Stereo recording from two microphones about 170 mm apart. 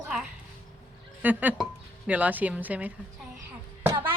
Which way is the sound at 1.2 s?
10° right (ahead or behind).